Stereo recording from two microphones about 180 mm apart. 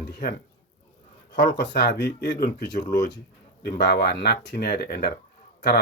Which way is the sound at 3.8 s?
65° left (ahead or behind).